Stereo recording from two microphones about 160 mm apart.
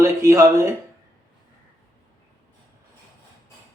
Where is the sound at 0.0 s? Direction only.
15° right (ahead or behind).